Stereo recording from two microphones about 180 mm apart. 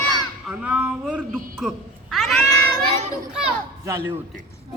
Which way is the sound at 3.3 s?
5° right (ahead or behind).